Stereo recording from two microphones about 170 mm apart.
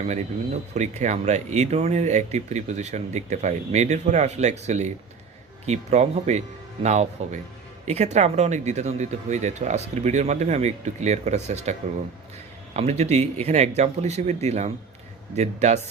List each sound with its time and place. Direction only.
0.7 s speech: 40° right (ahead or behind)